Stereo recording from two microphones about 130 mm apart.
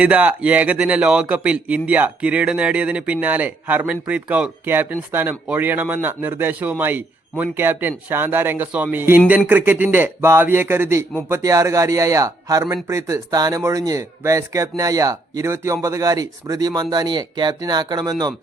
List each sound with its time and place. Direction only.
0.0 s a man's voice: 10° right (ahead or behind); by 18.3 s 30° right (ahead or behind)